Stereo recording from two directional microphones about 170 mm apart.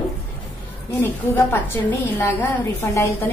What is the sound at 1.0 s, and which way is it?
A woman's voice, 15° left (ahead or behind).